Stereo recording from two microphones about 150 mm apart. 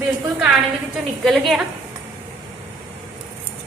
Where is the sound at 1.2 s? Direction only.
Centre (ahead or behind).